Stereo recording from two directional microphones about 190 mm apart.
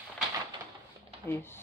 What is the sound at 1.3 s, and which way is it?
Speech, 10° left (ahead or behind).